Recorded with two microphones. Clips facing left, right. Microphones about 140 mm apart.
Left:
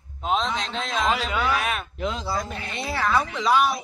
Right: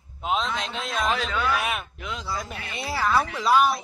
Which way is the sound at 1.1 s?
10° left (ahead or behind).